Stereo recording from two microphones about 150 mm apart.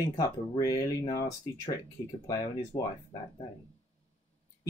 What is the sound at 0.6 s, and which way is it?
Speech, 25° left (ahead or behind).